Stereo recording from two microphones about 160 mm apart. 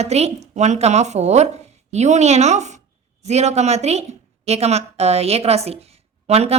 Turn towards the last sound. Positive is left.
turn(degrees=-40)  # may be behind; listen again after turning